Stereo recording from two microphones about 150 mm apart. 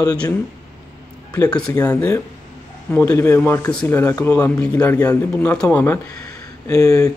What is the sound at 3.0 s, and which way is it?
Speech, 20° left (ahead or behind).